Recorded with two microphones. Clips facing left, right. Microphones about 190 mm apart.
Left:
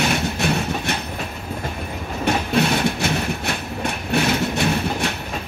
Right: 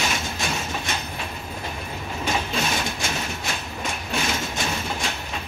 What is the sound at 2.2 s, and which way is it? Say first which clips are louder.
Train: left 7 dB; 60° left (ahead or behind).